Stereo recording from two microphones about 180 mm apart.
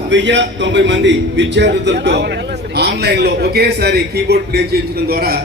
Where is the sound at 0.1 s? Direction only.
80° right.